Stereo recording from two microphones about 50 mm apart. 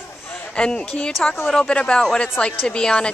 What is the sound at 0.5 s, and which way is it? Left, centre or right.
Speech, centre.